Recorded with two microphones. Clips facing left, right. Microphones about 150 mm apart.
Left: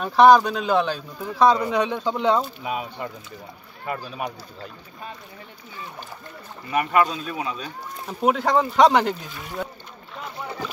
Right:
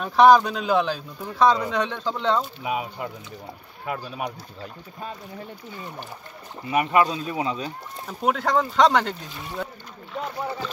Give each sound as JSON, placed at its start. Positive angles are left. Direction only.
{"t": 0.0, "sound": "speech", "side_deg": 0}
{"t": 2.6, "sound": "speech", "side_deg": -5}
{"t": 6.7, "sound": "speech", "side_deg": -20}
{"t": 8.1, "sound": "speech", "side_deg": 0}